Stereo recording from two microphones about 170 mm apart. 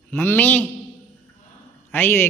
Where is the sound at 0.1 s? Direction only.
10° left (ahead or behind).